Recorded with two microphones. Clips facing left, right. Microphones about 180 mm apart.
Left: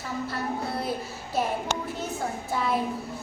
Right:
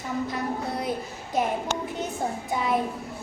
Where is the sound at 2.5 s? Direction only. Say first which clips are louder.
Right 1 dB; 20° right (ahead or behind).